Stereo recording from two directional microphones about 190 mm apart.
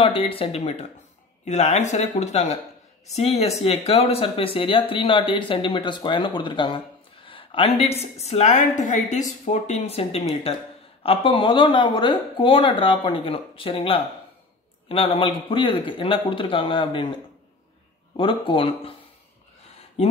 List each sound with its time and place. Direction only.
0.0 s a woman's voice: 30° left (ahead or behind)
18.1 s speech: 25° left (ahead or behind)